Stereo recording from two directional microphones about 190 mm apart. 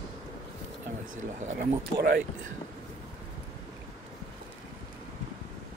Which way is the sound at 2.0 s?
50° right (ahead or behind).